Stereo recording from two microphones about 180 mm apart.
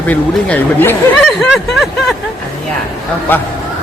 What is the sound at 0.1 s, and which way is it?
Speech, 10° left (ahead or behind).